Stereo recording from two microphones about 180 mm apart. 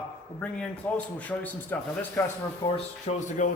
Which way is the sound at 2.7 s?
40° left (ahead or behind).